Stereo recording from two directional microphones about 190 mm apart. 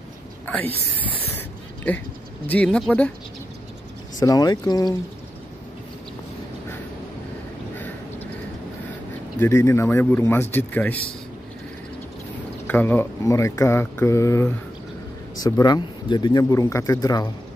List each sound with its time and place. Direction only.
0.5 s speech: 10° left (ahead or behind)
4.2 s speech: 20° left (ahead or behind)
7.7 s a sound: 10° left (ahead or behind)
9.4 s speech: 15° left (ahead or behind)
12.6 s speech: 10° left (ahead or behind)